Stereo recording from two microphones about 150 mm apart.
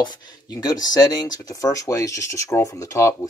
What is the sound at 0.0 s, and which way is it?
Speech, 30° left (ahead or behind).